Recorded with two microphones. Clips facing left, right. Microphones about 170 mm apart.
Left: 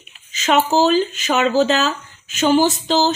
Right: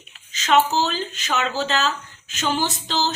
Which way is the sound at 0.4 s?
50° left (ahead or behind).